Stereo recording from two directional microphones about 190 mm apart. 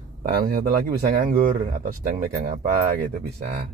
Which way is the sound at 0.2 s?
50° right (ahead or behind).